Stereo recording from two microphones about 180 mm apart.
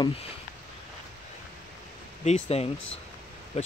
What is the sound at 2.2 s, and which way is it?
Speech, 35° left (ahead or behind).